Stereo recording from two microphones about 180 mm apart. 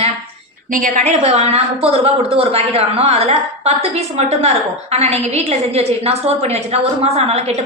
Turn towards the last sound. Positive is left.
turn(degrees=-35)  # may be behind; listen again after turning